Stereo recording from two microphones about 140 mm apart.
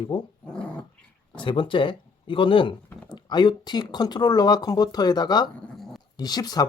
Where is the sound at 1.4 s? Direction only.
35° left (ahead or behind).